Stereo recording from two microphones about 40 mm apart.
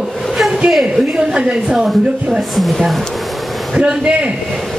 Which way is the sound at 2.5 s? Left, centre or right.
Centre.